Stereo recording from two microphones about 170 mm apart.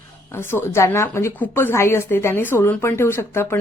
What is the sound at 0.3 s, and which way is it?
A woman's voice, 15° left (ahead or behind).